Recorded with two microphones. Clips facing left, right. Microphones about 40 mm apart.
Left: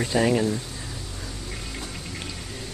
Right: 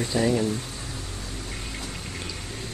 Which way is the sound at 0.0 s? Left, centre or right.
Left.